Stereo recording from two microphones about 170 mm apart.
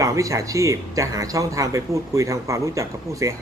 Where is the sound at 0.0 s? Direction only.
20° right (ahead or behind).